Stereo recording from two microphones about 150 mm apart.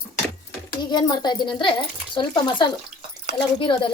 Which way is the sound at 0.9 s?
30° left (ahead or behind).